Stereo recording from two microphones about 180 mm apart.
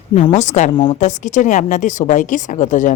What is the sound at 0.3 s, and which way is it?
A woman's voice, 40° left (ahead or behind).